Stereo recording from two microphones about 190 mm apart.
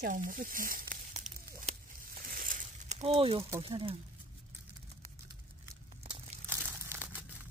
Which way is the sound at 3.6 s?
25° right (ahead or behind).